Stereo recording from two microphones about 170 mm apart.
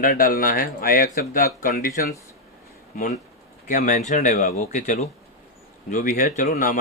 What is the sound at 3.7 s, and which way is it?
Speech, 50° left (ahead or behind).